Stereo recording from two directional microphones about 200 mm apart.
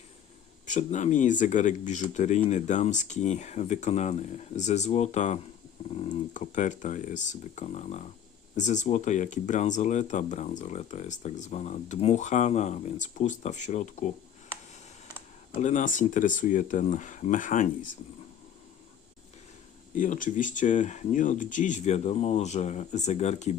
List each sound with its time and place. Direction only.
0.6 s speech: 35° left (ahead or behind)
15.5 s speech: 40° left (ahead or behind)
20.0 s speech: 40° left (ahead or behind)